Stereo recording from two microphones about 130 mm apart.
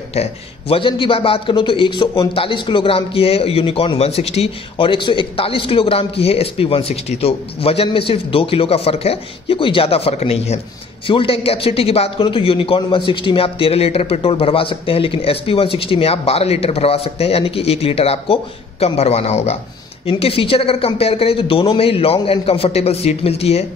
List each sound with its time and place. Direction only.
0.1 s a man's voice: 50° left (ahead or behind)
20.1 s a man's voice: 45° left (ahead or behind)